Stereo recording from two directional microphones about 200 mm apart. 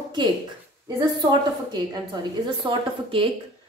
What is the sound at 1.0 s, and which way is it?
A woman's voice, 20° right (ahead or behind).